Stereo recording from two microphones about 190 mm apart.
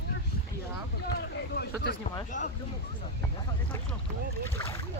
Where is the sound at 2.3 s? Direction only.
40° left (ahead or behind).